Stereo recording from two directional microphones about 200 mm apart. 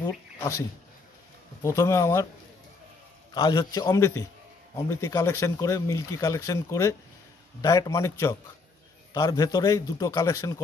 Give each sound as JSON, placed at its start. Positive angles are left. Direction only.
{"t": 1.6, "sound": "speech", "side_deg": 15}
{"t": 3.3, "sound": "speech", "side_deg": 20}